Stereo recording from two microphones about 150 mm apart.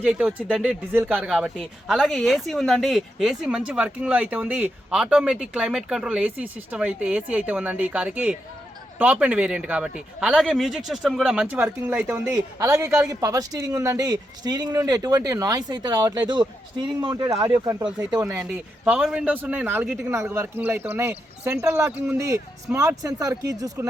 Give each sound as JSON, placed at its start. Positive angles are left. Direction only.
{"t": 0.0, "sound": "a man's voice", "side_deg": -5}